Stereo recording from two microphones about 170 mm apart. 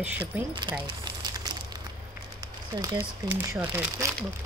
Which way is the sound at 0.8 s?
25° right (ahead or behind).